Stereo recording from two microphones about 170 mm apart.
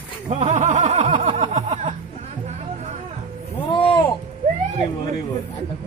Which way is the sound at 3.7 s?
30° left (ahead or behind).